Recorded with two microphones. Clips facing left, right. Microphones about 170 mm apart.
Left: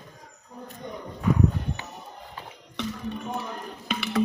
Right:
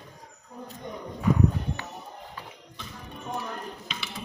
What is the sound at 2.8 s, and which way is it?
Music, 80° left.